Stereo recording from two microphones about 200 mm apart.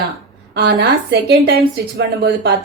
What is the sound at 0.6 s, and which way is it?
A woman's voice, 55° right (ahead or behind).